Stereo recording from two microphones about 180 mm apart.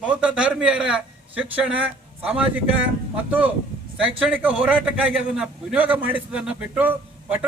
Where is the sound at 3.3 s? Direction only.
10° right (ahead or behind).